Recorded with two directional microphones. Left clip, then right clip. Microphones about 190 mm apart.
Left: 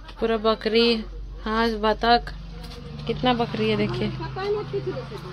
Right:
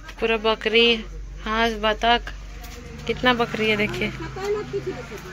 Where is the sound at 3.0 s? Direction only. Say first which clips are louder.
Right 3 dB; 10° left (ahead or behind).